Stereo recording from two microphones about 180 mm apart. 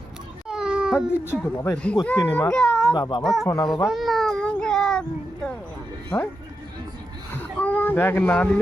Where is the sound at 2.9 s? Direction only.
25° left (ahead or behind).